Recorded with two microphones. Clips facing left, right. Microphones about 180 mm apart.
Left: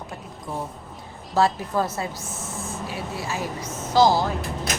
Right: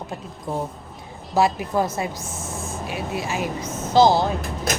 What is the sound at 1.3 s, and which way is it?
A woman's voice, 15° right (ahead or behind).